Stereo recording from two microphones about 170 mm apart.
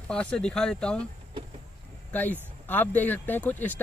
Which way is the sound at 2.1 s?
10° left (ahead or behind).